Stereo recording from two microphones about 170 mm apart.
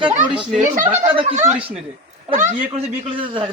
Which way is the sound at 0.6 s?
45° right (ahead or behind).